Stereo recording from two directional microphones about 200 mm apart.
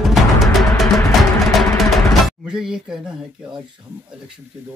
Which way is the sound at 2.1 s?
Centre (ahead or behind).